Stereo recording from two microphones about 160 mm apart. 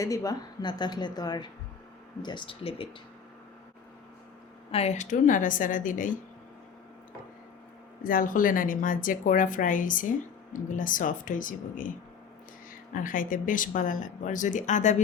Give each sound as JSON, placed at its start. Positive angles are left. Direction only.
{"t": 0.0, "sound": "a woman's voice", "side_deg": 20}
{"t": 4.7, "sound": "a woman's voice", "side_deg": 45}
{"t": 8.0, "sound": "a woman's voice", "side_deg": 60}
{"t": 12.9, "sound": "a woman's voice", "side_deg": 55}